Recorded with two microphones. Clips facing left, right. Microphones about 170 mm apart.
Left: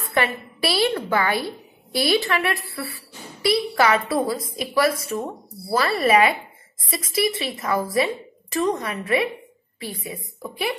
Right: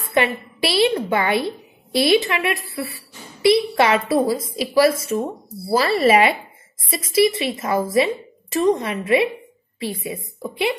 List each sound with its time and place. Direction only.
0.1 s a woman's voice: 25° right (ahead or behind)